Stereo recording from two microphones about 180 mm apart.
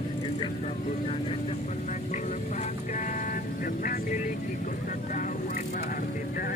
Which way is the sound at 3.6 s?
50° left (ahead or behind).